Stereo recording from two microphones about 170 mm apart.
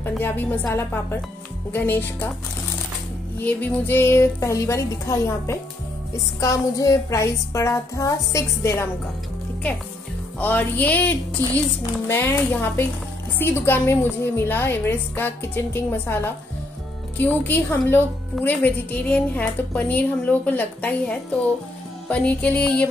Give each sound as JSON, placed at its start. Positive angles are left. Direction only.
{"t": 0.2, "sound": "a woman's voice", "side_deg": 10}
{"t": 3.4, "sound": "a woman's voice", "side_deg": 10}
{"t": 10.4, "sound": "a woman's voice", "side_deg": 10}